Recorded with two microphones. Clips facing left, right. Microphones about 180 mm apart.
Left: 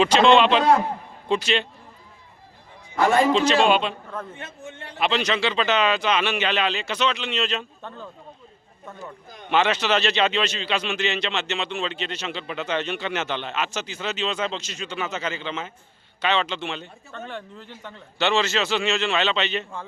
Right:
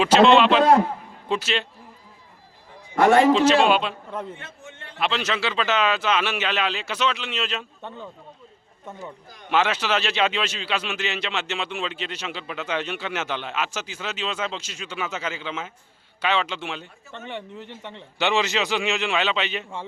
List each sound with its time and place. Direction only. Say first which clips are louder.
0.0 s a man's voice: right 1 dB; 5° right (ahead or behind)
2.9 s a man's voice: right 3 dB; 65° right (ahead or behind)
3.3 s a man's voice: right 1 dB; 5° right (ahead or behind)
4.4 s a man's voice: left 4 dB; 20° left (ahead or behind)
4.9 s a man's voice: left 2 dB; centre (ahead or behind)
7.8 s speech: right 1 dB; 20° right (ahead or behind)
9.5 s speech: left 1 dB; 5° right (ahead or behind)
17.1 s speech: right 1 dB; 20° right (ahead or behind)